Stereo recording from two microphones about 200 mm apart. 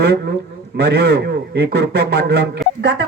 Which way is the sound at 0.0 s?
55° right (ahead or behind).